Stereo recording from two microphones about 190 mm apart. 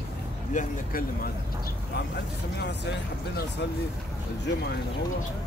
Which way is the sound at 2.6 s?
65° left (ahead or behind).